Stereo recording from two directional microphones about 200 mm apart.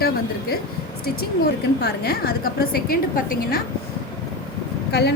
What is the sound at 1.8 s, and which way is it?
A woman's voice, 50° left (ahead or behind).